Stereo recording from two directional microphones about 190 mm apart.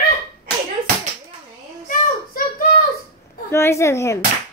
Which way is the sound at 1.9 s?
45° left (ahead or behind).